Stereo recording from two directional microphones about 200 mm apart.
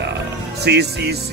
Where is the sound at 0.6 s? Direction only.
55° right (ahead or behind).